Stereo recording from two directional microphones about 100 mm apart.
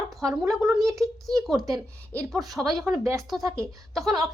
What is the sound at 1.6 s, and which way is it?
Speech, 35° right (ahead or behind).